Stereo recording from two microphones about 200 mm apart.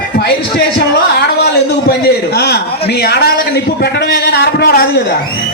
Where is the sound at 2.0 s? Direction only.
55° left (ahead or behind).